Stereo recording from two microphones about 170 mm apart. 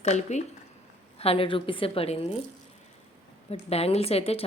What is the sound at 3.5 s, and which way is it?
Speech, 35° left (ahead or behind).